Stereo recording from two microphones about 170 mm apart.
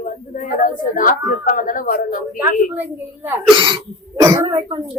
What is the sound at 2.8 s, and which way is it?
Speech, 10° right (ahead or behind).